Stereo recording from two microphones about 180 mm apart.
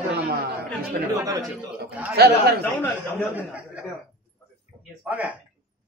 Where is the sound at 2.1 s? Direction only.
60° right (ahead or behind).